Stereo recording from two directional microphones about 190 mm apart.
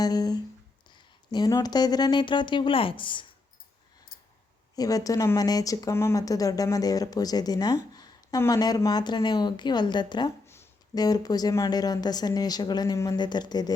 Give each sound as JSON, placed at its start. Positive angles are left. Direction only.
{"t": 0.0, "sound": "speech", "side_deg": 20}
{"t": 4.7, "sound": "speech", "side_deg": 20}
{"t": 10.4, "sound": "speech", "side_deg": 15}